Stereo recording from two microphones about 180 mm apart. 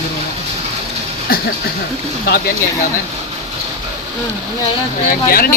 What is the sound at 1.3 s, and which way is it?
Speech, 55° left (ahead or behind).